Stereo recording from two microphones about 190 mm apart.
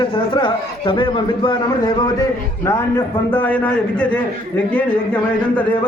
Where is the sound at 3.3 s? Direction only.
10° left (ahead or behind).